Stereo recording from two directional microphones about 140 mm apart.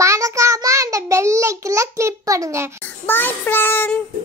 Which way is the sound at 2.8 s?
15° left (ahead or behind).